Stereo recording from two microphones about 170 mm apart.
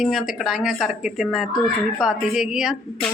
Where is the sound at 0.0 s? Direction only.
Centre (ahead or behind).